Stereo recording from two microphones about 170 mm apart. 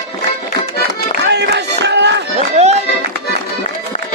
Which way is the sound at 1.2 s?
85° right.